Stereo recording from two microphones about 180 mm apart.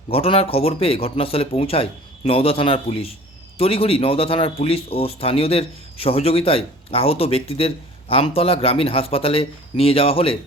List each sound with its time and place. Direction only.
0.1 s a man's voice: 30° left (ahead or behind)